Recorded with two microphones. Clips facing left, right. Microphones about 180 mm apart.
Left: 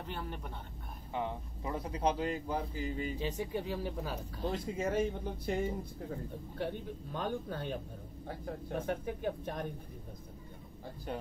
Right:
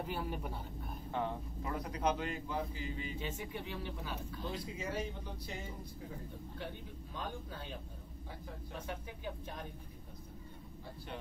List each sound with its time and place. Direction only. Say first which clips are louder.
0.0 s speech: right 2 dB; 5° right (ahead or behind)
1.6 s speech: left 3 dB; 25° left (ahead or behind); by 5.6 s 50° left (ahead or behind)
6.6 s speech: left 10 dB; 55° left (ahead or behind)